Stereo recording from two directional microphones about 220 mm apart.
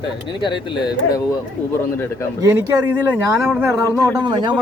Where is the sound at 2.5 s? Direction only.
10° right (ahead or behind).